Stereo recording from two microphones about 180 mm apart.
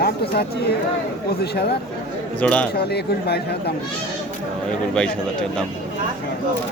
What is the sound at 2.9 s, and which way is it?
Speech, 60° left (ahead or behind).